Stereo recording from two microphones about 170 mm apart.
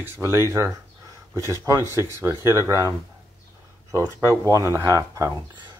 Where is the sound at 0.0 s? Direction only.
15° right (ahead or behind).